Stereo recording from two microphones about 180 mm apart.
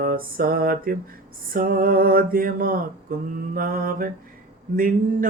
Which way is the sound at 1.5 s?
50° right (ahead or behind).